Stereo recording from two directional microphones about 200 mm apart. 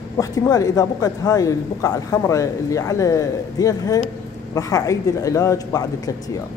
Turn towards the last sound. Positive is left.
turn(degrees=20)  # may be behind; listen again after turning